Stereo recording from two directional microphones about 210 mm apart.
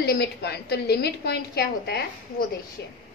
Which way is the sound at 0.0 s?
50° left (ahead or behind).